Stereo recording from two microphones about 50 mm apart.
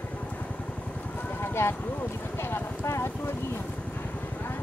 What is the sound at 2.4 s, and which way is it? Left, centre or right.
Clip-clop, left.